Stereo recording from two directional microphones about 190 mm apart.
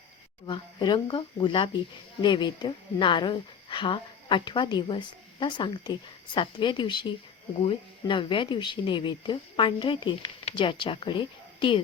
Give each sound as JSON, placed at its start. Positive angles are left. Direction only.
{"t": 0.4, "sound": "speech", "side_deg": 25}